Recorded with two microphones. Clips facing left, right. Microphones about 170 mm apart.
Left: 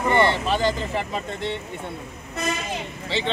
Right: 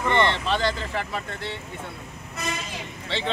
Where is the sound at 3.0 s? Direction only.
5° left (ahead or behind).